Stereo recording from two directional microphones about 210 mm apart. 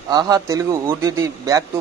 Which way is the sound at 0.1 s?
15° right (ahead or behind).